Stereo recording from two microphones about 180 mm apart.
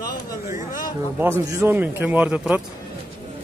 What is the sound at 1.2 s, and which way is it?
Speech, 15° right (ahead or behind).